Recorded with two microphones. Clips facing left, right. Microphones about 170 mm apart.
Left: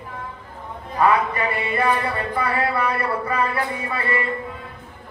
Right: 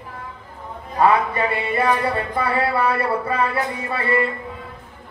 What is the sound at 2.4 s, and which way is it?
Speech, 30° right (ahead or behind).